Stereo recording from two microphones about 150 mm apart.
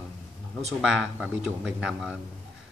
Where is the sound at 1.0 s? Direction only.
5° right (ahead or behind).